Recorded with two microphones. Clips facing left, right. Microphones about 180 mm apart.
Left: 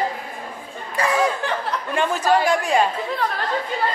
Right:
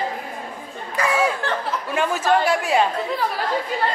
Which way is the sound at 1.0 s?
30° left (ahead or behind).